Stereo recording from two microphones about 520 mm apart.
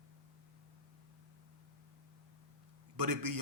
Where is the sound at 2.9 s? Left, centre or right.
Right.